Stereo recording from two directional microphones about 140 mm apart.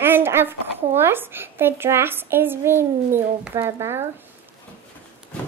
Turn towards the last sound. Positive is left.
turn(degrees=-20)  # may be behind; listen again after turning